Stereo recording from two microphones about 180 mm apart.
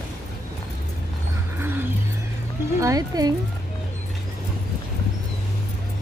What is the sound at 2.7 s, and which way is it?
Speech, 20° right (ahead or behind).